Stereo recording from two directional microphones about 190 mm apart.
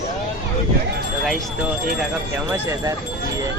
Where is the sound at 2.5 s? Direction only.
15° right (ahead or behind).